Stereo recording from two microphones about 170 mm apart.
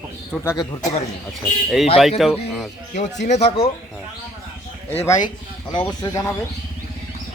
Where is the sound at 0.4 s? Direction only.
25° left (ahead or behind).